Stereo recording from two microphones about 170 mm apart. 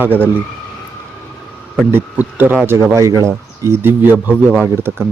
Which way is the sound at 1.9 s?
10° right (ahead or behind).